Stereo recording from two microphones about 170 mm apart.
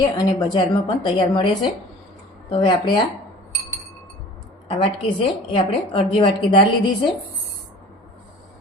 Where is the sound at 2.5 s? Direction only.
30° left (ahead or behind).